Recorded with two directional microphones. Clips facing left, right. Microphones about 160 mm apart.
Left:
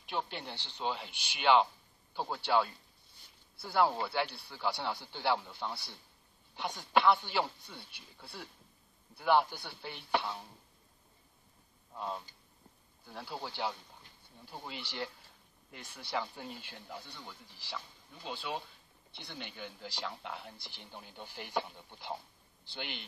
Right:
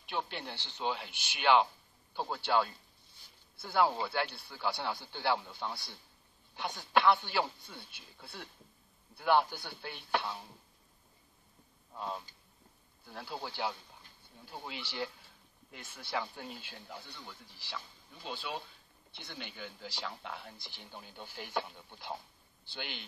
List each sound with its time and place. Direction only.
0.0 s speech: centre (ahead or behind)
11.9 s speech: centre (ahead or behind)